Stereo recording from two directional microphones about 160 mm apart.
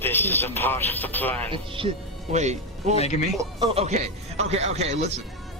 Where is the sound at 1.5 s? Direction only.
35° right (ahead or behind).